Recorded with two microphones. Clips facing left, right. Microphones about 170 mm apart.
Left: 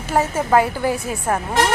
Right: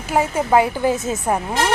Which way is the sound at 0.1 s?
10° right (ahead or behind).